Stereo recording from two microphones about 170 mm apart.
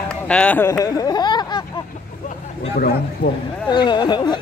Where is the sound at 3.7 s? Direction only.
25° left (ahead or behind).